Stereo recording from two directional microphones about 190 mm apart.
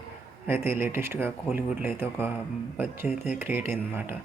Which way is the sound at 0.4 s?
10° right (ahead or behind).